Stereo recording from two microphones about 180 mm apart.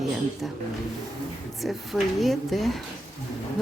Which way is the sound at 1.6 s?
Centre (ahead or behind).